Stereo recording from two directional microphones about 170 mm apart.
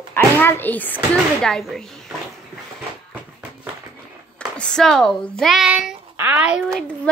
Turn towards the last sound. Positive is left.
turn(degrees=-5)  # may be behind; listen again after turning